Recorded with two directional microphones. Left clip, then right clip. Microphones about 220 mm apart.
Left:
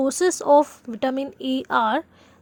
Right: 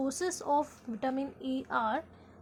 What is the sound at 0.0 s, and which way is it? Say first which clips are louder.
Speech: left 13 dB; 35° left (ahead or behind).